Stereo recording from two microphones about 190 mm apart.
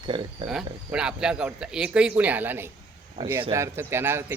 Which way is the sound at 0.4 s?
5° right (ahead or behind).